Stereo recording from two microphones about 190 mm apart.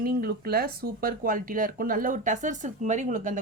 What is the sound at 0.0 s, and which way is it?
Speech, 50° right (ahead or behind).